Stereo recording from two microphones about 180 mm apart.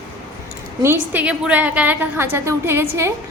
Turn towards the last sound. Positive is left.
turn(degrees=-15)  # may be behind; listen again after turning